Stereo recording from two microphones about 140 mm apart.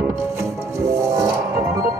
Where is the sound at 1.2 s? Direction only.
20° right (ahead or behind).